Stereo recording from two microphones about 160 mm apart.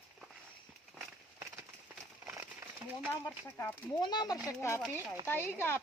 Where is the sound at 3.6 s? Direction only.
25° left (ahead or behind).